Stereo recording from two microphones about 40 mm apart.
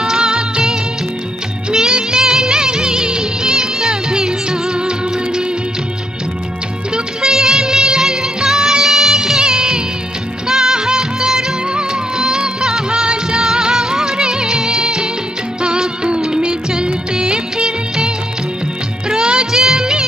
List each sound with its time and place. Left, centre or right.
0.0 s music of bollywood: centre
7.2 s music: centre
19.0 s music of bollywood: right